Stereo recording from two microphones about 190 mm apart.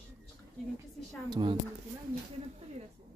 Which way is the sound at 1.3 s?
25° right (ahead or behind).